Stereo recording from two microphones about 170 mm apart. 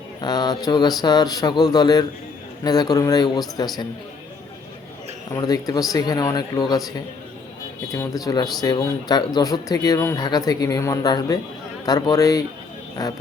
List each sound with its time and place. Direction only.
0.2 s speech: 25° left (ahead or behind)
5.3 s speech: 20° left (ahead or behind)
7.9 s speech: 20° left (ahead or behind)